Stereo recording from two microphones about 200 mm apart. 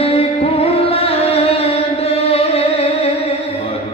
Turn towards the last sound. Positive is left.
turn(degrees=30)  # may be behind; listen again after turning